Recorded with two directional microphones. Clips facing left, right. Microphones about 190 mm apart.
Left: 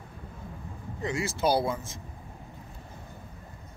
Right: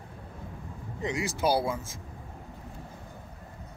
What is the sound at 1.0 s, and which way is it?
Speech, 15° right (ahead or behind).